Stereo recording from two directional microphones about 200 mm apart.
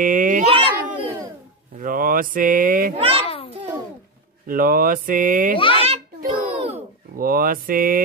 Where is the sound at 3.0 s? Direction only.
30° right (ahead or behind).